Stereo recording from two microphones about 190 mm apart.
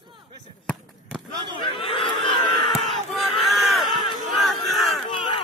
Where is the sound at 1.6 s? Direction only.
25° left (ahead or behind).